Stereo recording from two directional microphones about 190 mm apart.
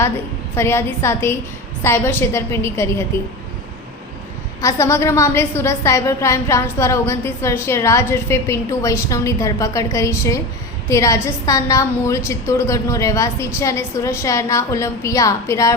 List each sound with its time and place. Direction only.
0.5 s a woman's voice: 15° left (ahead or behind)
4.6 s a woman's voice: 15° left (ahead or behind)